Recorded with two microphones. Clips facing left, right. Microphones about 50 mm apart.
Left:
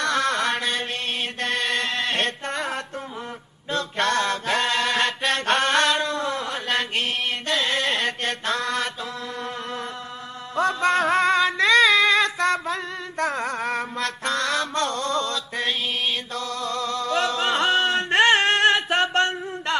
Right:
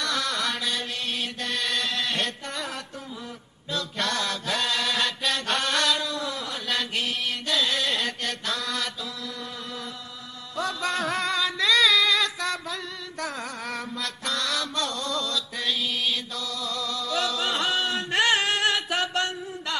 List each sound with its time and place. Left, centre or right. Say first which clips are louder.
0.0 s mantra: left 5 dB; left
1.4 s music: left 5 dB; left
3.7 s mantra: left 6 dB; left
10.5 s music: left 7 dB; left